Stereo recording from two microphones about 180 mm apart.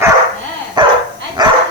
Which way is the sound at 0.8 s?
25° right (ahead or behind).